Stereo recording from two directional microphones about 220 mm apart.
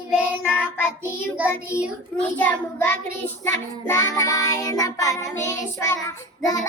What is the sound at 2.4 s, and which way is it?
Child singing, 5° left (ahead or behind).